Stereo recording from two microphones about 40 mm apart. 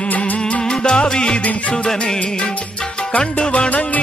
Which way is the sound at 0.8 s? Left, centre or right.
Left.